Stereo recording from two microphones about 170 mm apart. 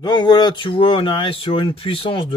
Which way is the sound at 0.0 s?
25° left (ahead or behind).